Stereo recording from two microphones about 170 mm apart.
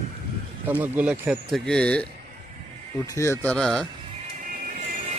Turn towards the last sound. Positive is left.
turn(degrees=-50)  # may be behind; listen again after turning